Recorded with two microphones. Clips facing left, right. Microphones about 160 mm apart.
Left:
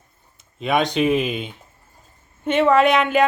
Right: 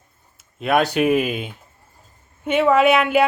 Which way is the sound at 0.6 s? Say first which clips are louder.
Right 1 dB; 5° right (ahead or behind).